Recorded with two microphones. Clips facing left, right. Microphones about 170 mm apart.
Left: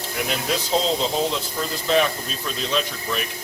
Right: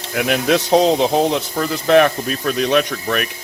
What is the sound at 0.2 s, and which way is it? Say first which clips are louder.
Speech: right 9 dB; 70° right (ahead or behind).